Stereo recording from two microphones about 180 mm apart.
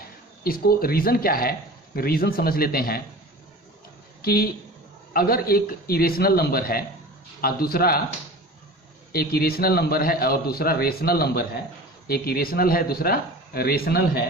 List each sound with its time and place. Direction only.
0.4 s a man's voice: 55° left (ahead or behind)
4.2 s a man's voice: 60° left (ahead or behind)
9.1 s a man's voice: 60° left (ahead or behind)